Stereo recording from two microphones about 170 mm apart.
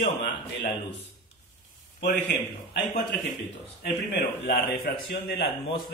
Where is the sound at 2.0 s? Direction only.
80° left.